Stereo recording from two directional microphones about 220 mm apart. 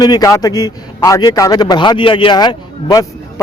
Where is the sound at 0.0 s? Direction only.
15° left (ahead or behind).